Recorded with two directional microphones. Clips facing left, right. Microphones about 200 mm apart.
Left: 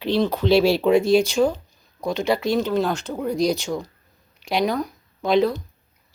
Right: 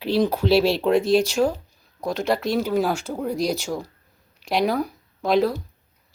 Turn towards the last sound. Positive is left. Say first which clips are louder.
# left 1 dB
turn(degrees=0)  # may be behind; listen again after turning